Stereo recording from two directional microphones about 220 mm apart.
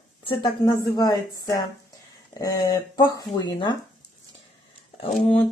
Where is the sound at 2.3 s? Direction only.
15° left (ahead or behind).